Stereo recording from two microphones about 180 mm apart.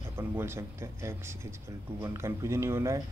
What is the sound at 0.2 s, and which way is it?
Speech, 15° right (ahead or behind).